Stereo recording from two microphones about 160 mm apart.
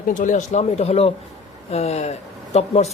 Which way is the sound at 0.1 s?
50° left (ahead or behind).